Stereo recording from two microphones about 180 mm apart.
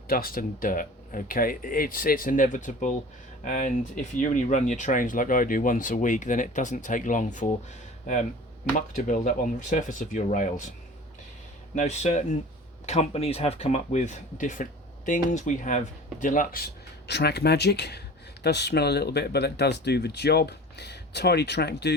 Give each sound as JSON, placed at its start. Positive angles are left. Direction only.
{"t": 0.1, "sound": "speech", "side_deg": 55}
{"t": 11.7, "sound": "speech", "side_deg": 40}
{"t": 17.1, "sound": "speech", "side_deg": 70}